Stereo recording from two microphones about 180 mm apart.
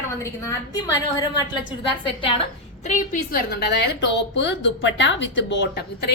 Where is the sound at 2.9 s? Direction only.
50° left (ahead or behind).